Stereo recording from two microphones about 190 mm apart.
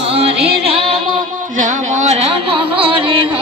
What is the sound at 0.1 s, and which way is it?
Music, 30° right (ahead or behind).